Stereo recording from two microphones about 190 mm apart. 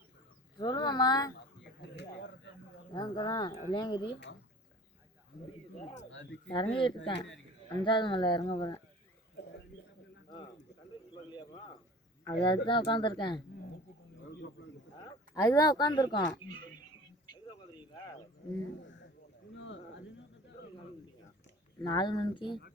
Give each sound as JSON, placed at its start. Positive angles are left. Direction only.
{"t": 0.6, "sound": "speech", "side_deg": 25}
{"t": 1.5, "sound": "a sound", "side_deg": 65}
{"t": 2.9, "sound": "speech", "side_deg": 25}
{"t": 5.8, "sound": "speech", "side_deg": 40}
{"t": 6.1, "sound": "speech", "side_deg": 80}
{"t": 6.5, "sound": "speech", "side_deg": 25}
{"t": 7.1, "sound": "a man's voice", "side_deg": 65}
{"t": 7.9, "sound": "speech", "side_deg": 25}
{"t": 11.1, "sound": "bird", "side_deg": 25}
{"t": 12.2, "sound": "speech", "side_deg": 25}
{"t": 14.9, "sound": "speech", "side_deg": 20}
{"t": 17.5, "sound": "a sound", "side_deg": 20}
{"t": 19.5, "sound": "a sound", "side_deg": 75}
{"t": 21.8, "sound": "speech", "side_deg": 25}